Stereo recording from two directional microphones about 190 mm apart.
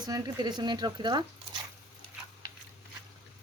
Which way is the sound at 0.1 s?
20° right (ahead or behind).